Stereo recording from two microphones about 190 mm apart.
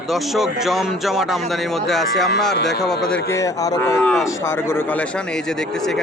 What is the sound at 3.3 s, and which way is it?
Speech, 15° left (ahead or behind).